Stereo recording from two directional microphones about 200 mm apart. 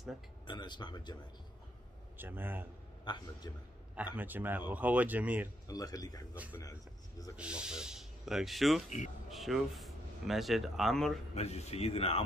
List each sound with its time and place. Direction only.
0.5 s speech: 20° left (ahead or behind)
2.1 s speech: 10° right (ahead or behind)
3.1 s speech: 20° left (ahead or behind)
4.2 s speech: 10° right (ahead or behind)
5.7 s speech: 20° left (ahead or behind)
7.3 s speech: 5° right (ahead or behind)
8.8 s speech: 35° left (ahead or behind)
9.3 s speech: centre (ahead or behind)
11.3 s speech: 30° left (ahead or behind)